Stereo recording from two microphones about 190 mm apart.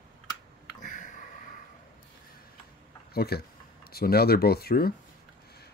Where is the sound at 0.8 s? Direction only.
40° left (ahead or behind).